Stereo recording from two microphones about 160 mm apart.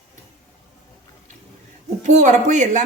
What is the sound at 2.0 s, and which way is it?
Speech, 50° right (ahead or behind).